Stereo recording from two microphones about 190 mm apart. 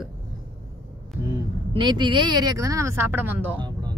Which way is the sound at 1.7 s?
25° right (ahead or behind).